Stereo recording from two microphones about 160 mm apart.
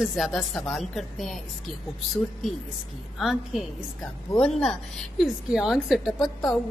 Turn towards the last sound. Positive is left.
turn(degrees=0)  # may be behind; listen again after turning